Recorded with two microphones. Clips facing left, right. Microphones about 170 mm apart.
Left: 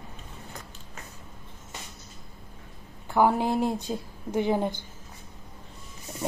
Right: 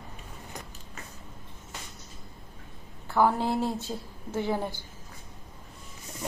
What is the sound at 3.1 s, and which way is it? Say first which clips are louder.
A woman's voice: left 2 dB; 15° left (ahead or behind).